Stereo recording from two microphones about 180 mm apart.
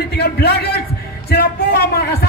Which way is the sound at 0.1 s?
60° left (ahead or behind).